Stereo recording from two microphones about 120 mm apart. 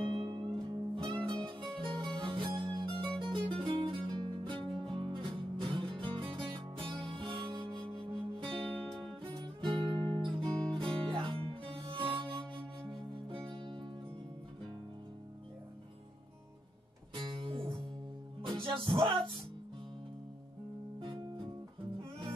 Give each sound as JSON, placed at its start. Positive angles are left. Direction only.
{"t": 0.0, "sound": "music", "side_deg": -45}
{"t": 8.5, "sound": "music", "side_deg": 10}
{"t": 9.2, "sound": "music", "side_deg": -45}
{"t": 17.1, "sound": "music", "side_deg": -45}
{"t": 21.0, "sound": "music", "side_deg": -45}